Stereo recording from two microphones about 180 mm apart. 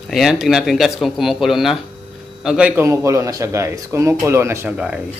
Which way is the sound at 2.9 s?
15° right (ahead or behind).